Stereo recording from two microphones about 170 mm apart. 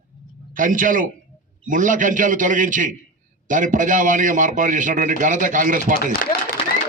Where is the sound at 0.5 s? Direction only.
50° right (ahead or behind).